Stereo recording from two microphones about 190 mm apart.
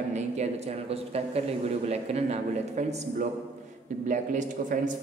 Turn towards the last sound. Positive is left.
turn(degrees=-40)  # may be behind; listen again after turning